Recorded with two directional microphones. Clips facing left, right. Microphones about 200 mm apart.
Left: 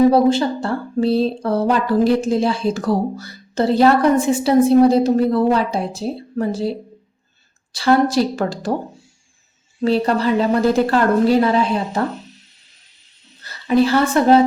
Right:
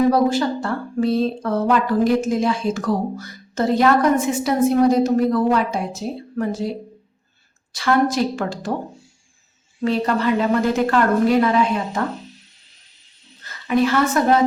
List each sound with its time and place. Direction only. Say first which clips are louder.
0.1 s speech: left 3 dB; 25° left (ahead or behind)
9.8 s speech: left 3 dB; 35° left (ahead or behind)
13.4 s a woman's voice: left 3 dB; 35° left (ahead or behind)